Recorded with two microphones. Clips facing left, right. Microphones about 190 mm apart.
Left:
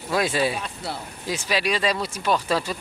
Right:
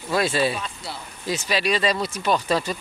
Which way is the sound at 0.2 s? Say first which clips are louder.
Right 1 dB; 15° left (ahead or behind).